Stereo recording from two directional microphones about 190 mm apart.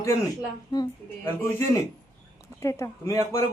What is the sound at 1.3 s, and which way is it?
A man's voice, 15° left (ahead or behind).